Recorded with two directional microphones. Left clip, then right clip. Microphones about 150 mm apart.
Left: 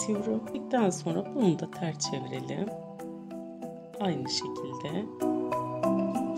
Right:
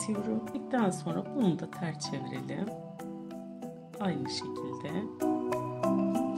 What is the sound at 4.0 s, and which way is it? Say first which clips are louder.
Speech: left 3 dB; 40° left (ahead or behind).